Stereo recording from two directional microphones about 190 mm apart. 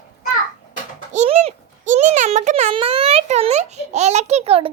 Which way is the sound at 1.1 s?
35° right (ahead or behind).